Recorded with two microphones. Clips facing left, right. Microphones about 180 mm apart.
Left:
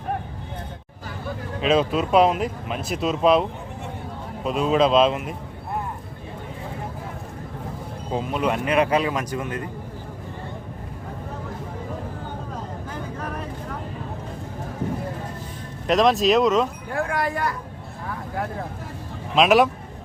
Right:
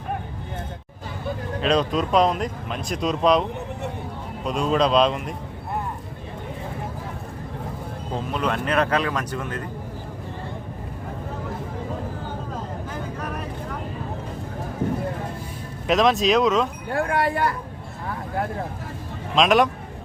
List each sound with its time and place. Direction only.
1.6 s speech: 5° left (ahead or behind)
4.4 s speech: 5° left (ahead or behind)
8.1 s speech: 10° left (ahead or behind)
15.9 s speech: centre (ahead or behind)
16.9 s speech: 35° right (ahead or behind)
19.4 s speech: 5° left (ahead or behind)